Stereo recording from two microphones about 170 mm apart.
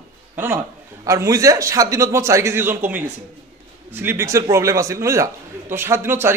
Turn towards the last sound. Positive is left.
turn(degrees=-15)  # may be behind; listen again after turning